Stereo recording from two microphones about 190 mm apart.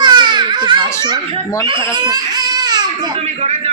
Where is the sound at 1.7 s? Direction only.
20° right (ahead or behind).